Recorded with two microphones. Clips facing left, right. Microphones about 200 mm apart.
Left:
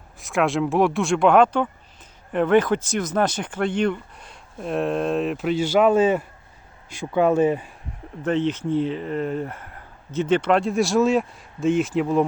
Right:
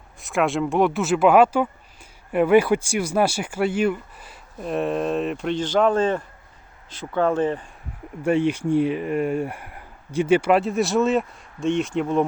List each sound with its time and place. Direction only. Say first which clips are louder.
0.2 s speech: even; centre (ahead or behind)
8.2 s speech: right 2 dB; 10° right (ahead or behind)